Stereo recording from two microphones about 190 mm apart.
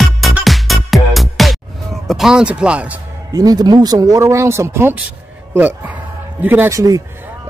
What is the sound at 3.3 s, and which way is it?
Speech, 20° right (ahead or behind).